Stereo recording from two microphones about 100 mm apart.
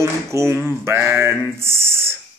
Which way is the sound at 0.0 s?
30° right (ahead or behind).